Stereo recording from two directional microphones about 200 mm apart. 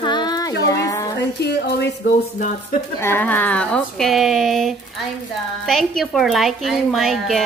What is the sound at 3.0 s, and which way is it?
A woman's voice, 10° left (ahead or behind).